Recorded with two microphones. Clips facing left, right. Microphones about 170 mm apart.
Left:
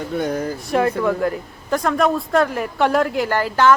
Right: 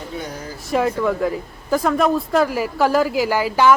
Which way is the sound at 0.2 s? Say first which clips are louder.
Left 12 dB; 55° left (ahead or behind).